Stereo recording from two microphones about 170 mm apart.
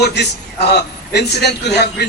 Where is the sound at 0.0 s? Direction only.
80° left.